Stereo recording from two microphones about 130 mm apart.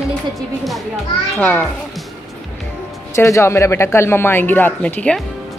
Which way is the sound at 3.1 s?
25° left (ahead or behind).